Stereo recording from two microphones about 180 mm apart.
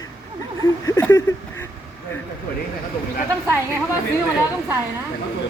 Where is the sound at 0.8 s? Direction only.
15° left (ahead or behind).